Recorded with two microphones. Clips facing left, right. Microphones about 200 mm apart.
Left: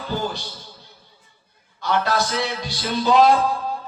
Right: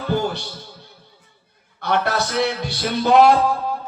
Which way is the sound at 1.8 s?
60° right (ahead or behind).